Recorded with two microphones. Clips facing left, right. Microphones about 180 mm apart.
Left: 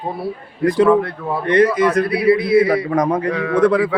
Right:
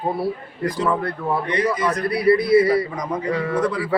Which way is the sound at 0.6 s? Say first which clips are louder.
Left 9 dB; 60° left (ahead or behind).